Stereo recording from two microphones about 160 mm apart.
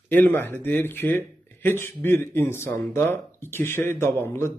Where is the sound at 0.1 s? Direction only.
10° left (ahead or behind).